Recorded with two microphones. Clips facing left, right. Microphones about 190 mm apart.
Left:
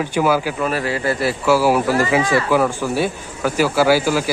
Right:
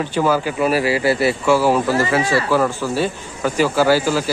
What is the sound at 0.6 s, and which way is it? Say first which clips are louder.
A man's voice: right 4 dB; 10° right (ahead or behind).